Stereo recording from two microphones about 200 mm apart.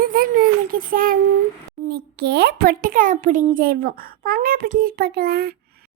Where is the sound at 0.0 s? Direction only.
45° right (ahead or behind).